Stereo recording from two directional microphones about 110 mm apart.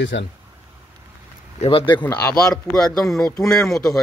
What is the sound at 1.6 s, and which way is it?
Speech, 60° left (ahead or behind).